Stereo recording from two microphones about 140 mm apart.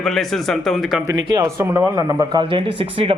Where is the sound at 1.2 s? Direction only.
30° right (ahead or behind).